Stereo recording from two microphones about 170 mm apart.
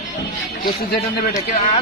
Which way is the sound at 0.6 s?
65° left (ahead or behind).